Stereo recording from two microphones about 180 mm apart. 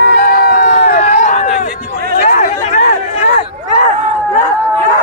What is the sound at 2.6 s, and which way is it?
Chatter, 40° left (ahead or behind).